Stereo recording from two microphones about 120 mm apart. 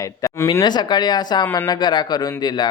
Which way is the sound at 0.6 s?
35° left (ahead or behind).